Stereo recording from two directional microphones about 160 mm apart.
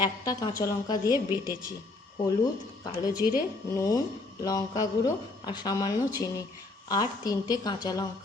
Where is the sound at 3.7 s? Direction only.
20° left (ahead or behind).